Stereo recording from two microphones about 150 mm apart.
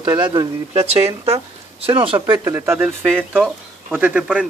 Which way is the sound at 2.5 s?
15° right (ahead or behind).